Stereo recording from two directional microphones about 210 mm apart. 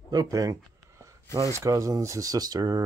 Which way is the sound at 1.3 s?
15° right (ahead or behind).